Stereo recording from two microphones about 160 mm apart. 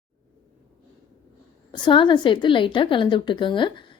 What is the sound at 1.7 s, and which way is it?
Speech, 30° left (ahead or behind).